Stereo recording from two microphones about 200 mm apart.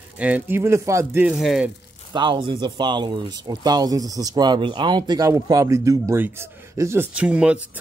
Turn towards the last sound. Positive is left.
turn(degrees=-5)  # may be behind; listen again after turning